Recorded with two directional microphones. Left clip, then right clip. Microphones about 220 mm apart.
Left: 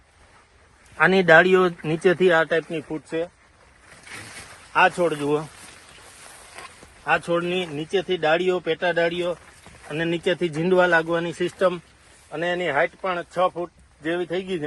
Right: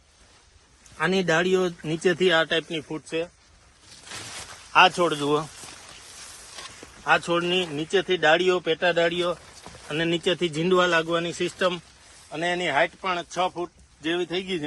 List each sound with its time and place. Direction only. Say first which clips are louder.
0.9 s speech: left 8 dB; 15° left (ahead or behind)
1.8 s speech: left 3 dB; 5° left (ahead or behind)
4.7 s speech: right 1 dB; 10° right (ahead or behind)
7.0 s speech: even; centre (ahead or behind)